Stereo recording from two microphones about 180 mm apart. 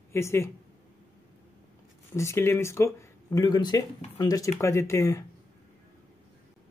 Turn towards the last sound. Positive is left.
turn(degrees=15)  # may be behind; listen again after turning